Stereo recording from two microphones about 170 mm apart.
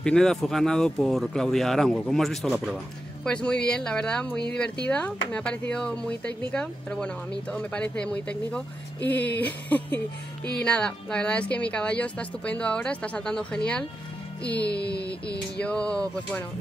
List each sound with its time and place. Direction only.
0.0 s speech: 5° left (ahead or behind)
14.7 s a sound: 75° left (ahead or behind)
15.6 s speech: 5° left (ahead or behind)